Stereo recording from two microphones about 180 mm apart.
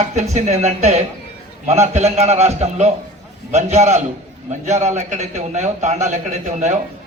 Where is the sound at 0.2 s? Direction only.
40° right (ahead or behind).